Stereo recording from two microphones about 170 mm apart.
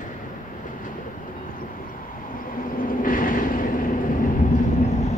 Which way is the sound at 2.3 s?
55° left (ahead or behind).